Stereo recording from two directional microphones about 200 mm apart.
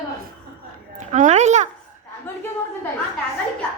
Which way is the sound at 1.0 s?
40° right (ahead or behind).